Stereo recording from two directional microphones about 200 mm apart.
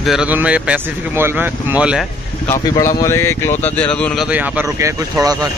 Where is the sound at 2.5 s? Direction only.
15° left (ahead or behind).